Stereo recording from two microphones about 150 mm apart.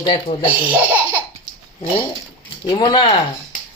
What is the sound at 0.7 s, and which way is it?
Laughter, 10° right (ahead or behind).